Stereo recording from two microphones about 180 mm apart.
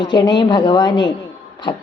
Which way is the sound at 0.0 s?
25° left (ahead or behind).